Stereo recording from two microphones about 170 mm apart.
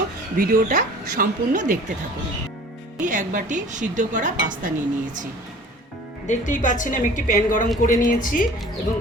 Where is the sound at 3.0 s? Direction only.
50° right (ahead or behind).